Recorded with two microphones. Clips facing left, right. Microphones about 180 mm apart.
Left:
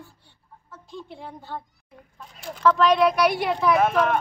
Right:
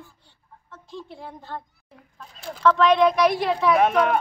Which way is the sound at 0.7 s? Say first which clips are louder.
Right 1 dB; centre (ahead or behind).